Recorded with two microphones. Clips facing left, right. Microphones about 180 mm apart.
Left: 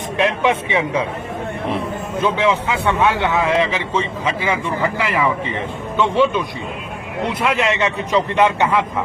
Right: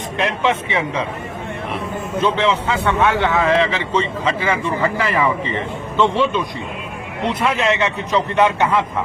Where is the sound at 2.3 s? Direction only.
15° left (ahead or behind).